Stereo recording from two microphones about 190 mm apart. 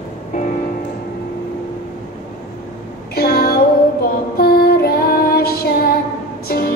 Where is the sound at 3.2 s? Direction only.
55° left (ahead or behind).